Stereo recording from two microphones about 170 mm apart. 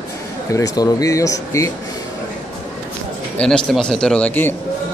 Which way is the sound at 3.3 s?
5° left (ahead or behind).